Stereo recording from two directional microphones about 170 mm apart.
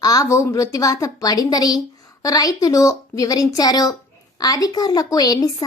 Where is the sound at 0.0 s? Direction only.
20° left (ahead or behind).